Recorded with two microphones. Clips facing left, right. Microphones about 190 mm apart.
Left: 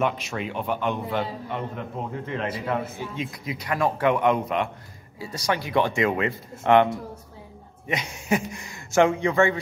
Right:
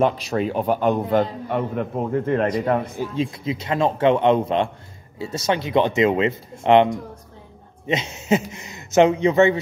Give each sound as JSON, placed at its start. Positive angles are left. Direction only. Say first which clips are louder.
{"t": 0.0, "sound": "speech", "louder": "right 6 dB", "side_deg": -35}
{"t": 1.1, "sound": "a man's voice", "louder": "right 8 dB", "side_deg": -50}
{"t": 3.2, "sound": "a man's voice", "louder": "right 9 dB", "side_deg": -25}